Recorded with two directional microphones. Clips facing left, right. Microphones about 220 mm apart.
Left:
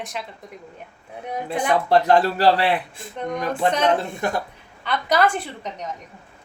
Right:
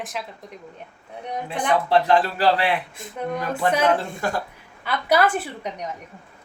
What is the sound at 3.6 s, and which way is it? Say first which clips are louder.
Speech: even; 25° left (ahead or behind).